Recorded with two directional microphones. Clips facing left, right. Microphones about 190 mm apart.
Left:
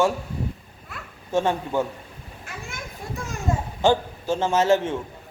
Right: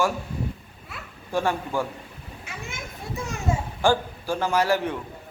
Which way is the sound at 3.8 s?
20° left (ahead or behind).